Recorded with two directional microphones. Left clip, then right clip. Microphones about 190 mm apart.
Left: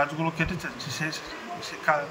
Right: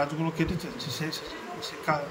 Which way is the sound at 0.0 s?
10° right (ahead or behind).